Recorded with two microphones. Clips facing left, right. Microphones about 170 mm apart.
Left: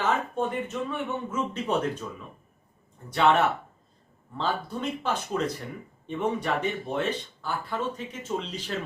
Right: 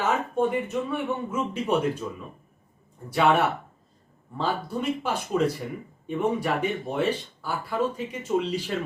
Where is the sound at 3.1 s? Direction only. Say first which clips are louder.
Right 1 dB; 10° right (ahead or behind).